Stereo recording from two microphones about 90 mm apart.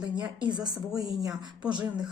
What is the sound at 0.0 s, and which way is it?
Speech, 55° right (ahead or behind).